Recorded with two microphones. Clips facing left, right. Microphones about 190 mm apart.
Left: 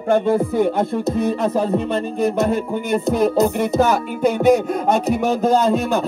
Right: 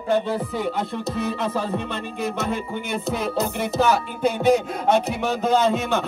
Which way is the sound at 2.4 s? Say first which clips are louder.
Left 7 dB; 45° left (ahead or behind).